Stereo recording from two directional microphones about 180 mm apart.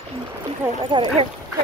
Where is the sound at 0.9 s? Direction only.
25° right (ahead or behind).